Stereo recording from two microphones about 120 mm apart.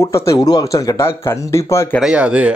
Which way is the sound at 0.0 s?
25° left (ahead or behind).